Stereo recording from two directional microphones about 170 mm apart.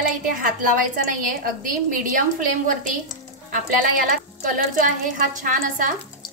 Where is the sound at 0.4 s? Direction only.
55° right (ahead or behind).